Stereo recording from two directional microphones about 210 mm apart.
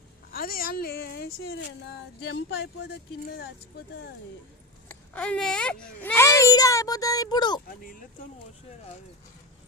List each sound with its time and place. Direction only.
0.3 s speech: 45° left (ahead or behind)
4.9 s a child's voice: 5° left (ahead or behind)
7.7 s speech: 40° left (ahead or behind)